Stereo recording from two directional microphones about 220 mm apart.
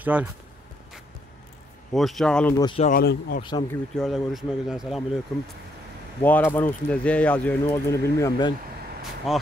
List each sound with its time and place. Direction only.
0.0 s speech: 10° right (ahead or behind)
2.0 s speech: centre (ahead or behind)
2.5 s speech: 20° left (ahead or behind)
2.9 s speech: 45° left (ahead or behind)
3.4 s speech: 20° left (ahead or behind)
3.9 s speech: centre (ahead or behind)
6.2 s speech: 10° left (ahead or behind)
9.3 s speech: centre (ahead or behind)